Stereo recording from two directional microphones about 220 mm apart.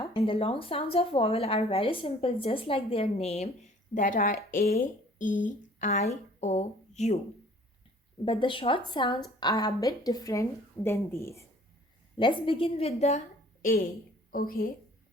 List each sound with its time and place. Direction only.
0.0 s speech: 25° left (ahead or behind)
8.2 s a woman's voice: 25° left (ahead or behind)
12.1 s a woman's voice: 20° left (ahead or behind); by 14.7 s 40° left (ahead or behind)